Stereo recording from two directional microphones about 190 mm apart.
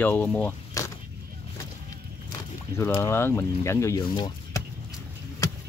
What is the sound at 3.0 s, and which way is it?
Speech, 15° left (ahead or behind).